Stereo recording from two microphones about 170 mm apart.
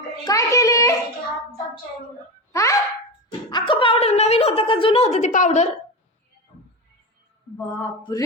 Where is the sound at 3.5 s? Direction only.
30° left (ahead or behind).